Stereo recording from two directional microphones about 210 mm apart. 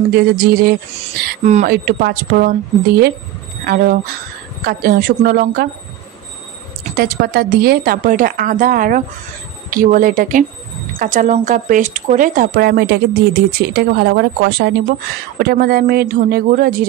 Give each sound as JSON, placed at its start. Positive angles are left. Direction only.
{"t": 0.1, "sound": "speech", "side_deg": -45}
{"t": 1.4, "sound": "speech", "side_deg": -35}
{"t": 1.7, "sound": "speech", "side_deg": -45}
{"t": 6.8, "sound": "speech", "side_deg": -45}